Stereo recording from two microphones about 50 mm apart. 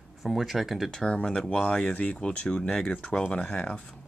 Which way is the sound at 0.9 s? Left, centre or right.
Centre.